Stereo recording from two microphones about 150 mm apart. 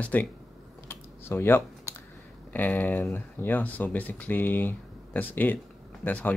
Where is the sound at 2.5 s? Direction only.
10° left (ahead or behind).